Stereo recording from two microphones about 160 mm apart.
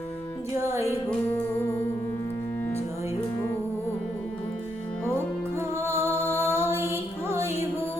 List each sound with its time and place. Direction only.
0.6 s music: 15° right (ahead or behind)
5.5 s music: 15° right (ahead or behind)